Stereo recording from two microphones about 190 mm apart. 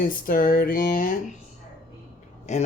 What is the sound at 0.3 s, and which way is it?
Speech, 50° left (ahead or behind).